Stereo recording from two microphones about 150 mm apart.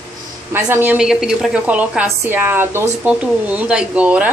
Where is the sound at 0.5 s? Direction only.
15° right (ahead or behind).